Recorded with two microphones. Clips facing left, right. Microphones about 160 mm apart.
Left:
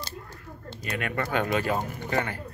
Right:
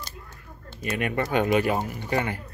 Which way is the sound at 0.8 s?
15° right (ahead or behind).